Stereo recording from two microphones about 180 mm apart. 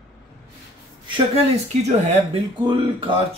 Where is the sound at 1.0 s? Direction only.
30° right (ahead or behind).